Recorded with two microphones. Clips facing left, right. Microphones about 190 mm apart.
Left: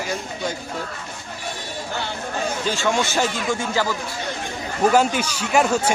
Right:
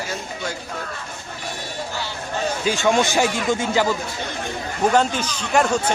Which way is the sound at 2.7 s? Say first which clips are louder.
Right 5 dB; 15° right (ahead or behind).